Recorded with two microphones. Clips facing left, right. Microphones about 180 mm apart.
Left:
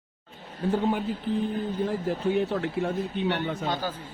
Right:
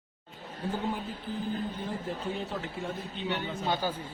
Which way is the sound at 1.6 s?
70° left (ahead or behind).